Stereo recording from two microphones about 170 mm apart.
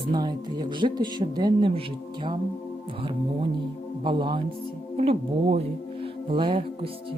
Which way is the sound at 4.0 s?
25° right (ahead or behind).